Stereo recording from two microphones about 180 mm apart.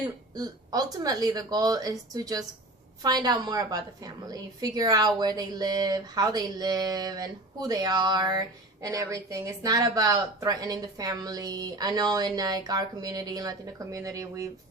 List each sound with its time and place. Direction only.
0.3 s a woman's voice: 20° right (ahead or behind)